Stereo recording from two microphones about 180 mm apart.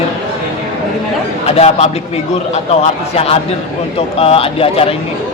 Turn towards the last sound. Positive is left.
turn(degrees=30)  # may be behind; listen again after turning